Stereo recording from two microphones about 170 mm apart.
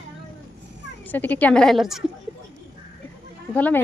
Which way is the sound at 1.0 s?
10° left (ahead or behind).